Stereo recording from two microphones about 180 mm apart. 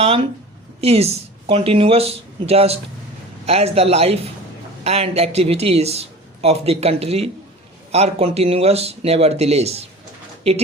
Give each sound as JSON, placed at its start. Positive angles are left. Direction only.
{"t": 0.0, "sound": "speech", "side_deg": -30}